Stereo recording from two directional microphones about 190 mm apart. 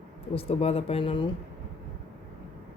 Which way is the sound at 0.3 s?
30° left (ahead or behind).